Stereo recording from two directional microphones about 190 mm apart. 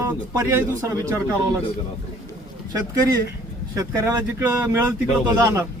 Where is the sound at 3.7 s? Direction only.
15° right (ahead or behind).